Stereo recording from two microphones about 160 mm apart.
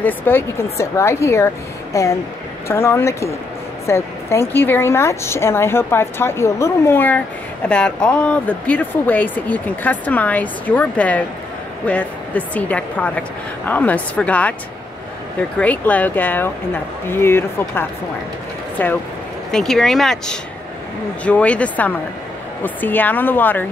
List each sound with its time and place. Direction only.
0.0 s speech: 15° left (ahead or behind)
15.6 s speech: 10° left (ahead or behind)